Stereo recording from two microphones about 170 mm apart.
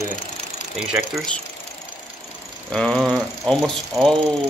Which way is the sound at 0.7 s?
Centre (ahead or behind).